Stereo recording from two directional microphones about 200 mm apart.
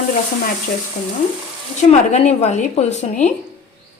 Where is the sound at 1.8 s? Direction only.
35° left (ahead or behind).